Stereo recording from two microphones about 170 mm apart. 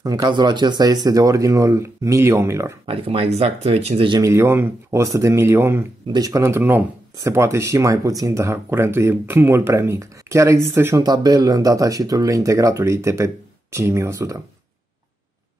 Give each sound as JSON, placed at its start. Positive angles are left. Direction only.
{"t": 0.0, "sound": "speech", "side_deg": -20}
{"t": 2.9, "sound": "speech", "side_deg": -35}
{"t": 4.2, "sound": "speech", "side_deg": -15}